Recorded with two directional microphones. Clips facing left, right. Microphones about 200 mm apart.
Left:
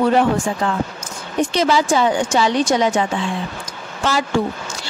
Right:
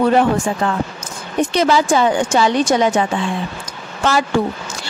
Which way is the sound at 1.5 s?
55° right (ahead or behind).